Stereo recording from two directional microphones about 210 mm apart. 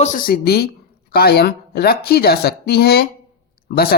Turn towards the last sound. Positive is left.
turn(degrees=50)  # may be behind; listen again after turning